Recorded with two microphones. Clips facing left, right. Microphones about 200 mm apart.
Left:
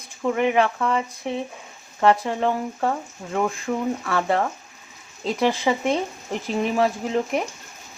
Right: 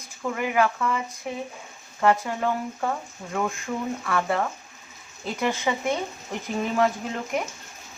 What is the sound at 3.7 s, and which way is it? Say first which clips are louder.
Speech: left 4 dB; 45° left (ahead or behind).